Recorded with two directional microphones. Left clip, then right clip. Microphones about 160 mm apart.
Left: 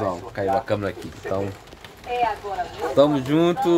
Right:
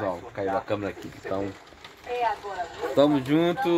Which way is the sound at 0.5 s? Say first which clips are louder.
Left 5 dB; 10° right (ahead or behind).